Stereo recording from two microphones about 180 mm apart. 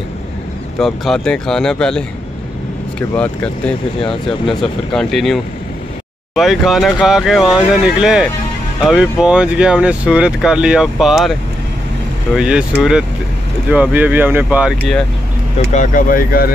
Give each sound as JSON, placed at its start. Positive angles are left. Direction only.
{"t": 0.7, "sound": "speech", "side_deg": 0}
{"t": 3.2, "sound": "speech", "side_deg": 5}
{"t": 12.4, "sound": "speech", "side_deg": -5}
{"t": 15.7, "sound": "speech", "side_deg": 45}